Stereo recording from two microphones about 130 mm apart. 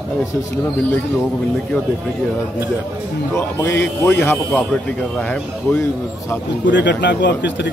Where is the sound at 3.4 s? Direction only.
15° left (ahead or behind).